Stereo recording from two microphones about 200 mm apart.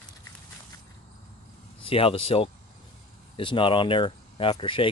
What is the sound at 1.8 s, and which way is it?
Speech, 25° left (ahead or behind).